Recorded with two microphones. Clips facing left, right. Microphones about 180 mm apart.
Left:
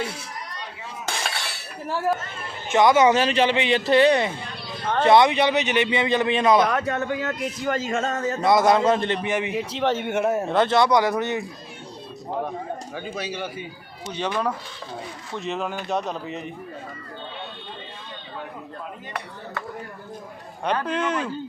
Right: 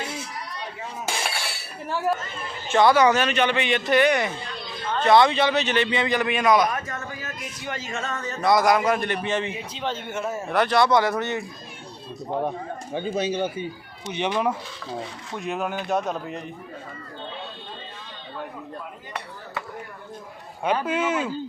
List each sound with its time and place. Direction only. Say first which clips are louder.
1.0 s a sound: even; 10° right (ahead or behind)
1.9 s speech: left 1 dB; centre (ahead or behind)
2.6 s speech: left 1 dB; 20° left (ahead or behind)
6.7 s a man's voice: left 6 dB; 70° left (ahead or behind)
7.7 s a man's voice: left 6 dB; 50° left (ahead or behind)
8.4 s speech: left 1 dB; 20° left (ahead or behind)
9.6 s speech: left 7 dB; 75° left (ahead or behind)
10.4 s speech: right 3 dB; 20° left (ahead or behind)
12.5 s speech: right 1 dB; 25° right (ahead or behind)
15.4 s speech: even; 10° right (ahead or behind)
20.7 s speech: right 1 dB; 5° right (ahead or behind)